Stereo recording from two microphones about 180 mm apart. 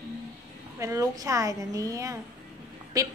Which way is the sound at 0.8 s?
15° right (ahead or behind).